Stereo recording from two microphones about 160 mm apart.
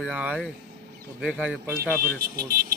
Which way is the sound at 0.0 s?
5° right (ahead or behind).